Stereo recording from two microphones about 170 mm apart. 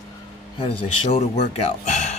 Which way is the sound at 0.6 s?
35° left (ahead or behind).